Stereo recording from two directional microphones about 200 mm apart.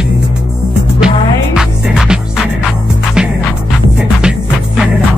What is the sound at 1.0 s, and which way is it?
Music, 5° right (ahead or behind).